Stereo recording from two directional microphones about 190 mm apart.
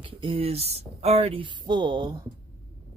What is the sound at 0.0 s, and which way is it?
Speech, 30° right (ahead or behind).